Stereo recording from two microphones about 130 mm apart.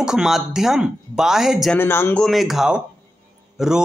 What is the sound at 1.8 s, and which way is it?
Speech, 20° left (ahead or behind).